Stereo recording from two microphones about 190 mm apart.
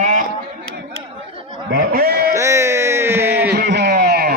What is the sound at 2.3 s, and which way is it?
Music, 15° right (ahead or behind).